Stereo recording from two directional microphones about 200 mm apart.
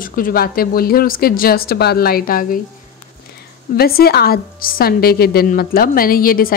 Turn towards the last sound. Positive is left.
turn(degrees=45)  # may be behind; listen again after turning